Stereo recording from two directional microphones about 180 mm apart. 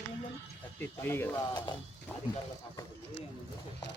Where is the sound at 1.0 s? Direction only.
10° left (ahead or behind).